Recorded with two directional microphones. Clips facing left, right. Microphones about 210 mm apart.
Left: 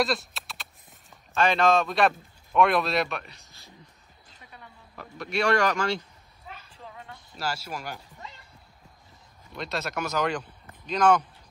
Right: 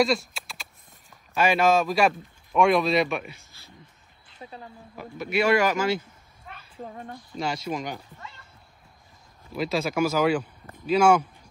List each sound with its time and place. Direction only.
0.0 s a sound: centre (ahead or behind)
1.3 s speech: 10° right (ahead or behind)
4.9 s speech: 5° right (ahead or behind)
6.8 s a woman's voice: 45° right (ahead or behind)
7.3 s speech: 5° left (ahead or behind)
9.5 s speech: 5° right (ahead or behind)